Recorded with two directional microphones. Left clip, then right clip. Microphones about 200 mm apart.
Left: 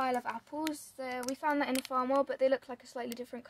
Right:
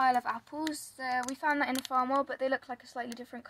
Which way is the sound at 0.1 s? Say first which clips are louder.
Right 5 dB; 30° left (ahead or behind).